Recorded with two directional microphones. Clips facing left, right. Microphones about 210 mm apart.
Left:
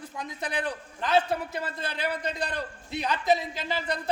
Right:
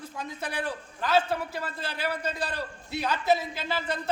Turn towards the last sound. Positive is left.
turn(degrees=15)  # may be behind; listen again after turning